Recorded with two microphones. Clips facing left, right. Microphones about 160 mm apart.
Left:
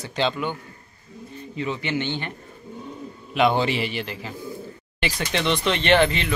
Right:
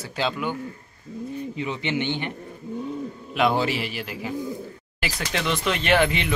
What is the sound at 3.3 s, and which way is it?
Speech, centre (ahead or behind).